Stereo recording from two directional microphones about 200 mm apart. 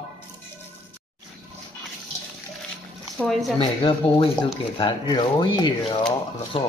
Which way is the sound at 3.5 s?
25° left (ahead or behind).